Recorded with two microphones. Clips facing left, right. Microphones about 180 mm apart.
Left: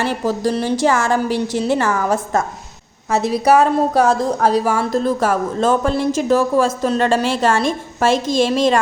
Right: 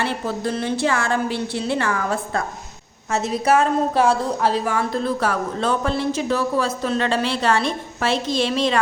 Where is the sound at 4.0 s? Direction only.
40° left (ahead or behind).